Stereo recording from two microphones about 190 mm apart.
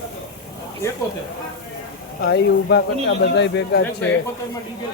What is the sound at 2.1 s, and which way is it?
Speech, 65° left (ahead or behind).